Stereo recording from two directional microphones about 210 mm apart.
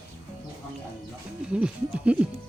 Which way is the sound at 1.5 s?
5° right (ahead or behind).